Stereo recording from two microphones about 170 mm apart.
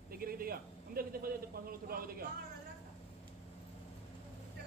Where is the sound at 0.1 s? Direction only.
60° right (ahead or behind).